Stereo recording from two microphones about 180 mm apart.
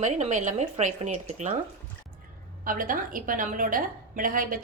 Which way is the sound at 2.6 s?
50° right (ahead or behind).